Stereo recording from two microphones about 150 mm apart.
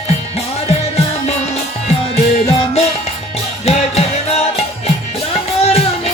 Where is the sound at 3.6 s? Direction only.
45° left (ahead or behind).